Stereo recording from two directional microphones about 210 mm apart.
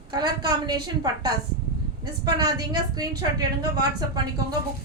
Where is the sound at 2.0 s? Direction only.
20° right (ahead or behind).